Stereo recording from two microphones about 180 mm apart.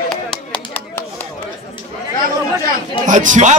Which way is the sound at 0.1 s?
5° left (ahead or behind).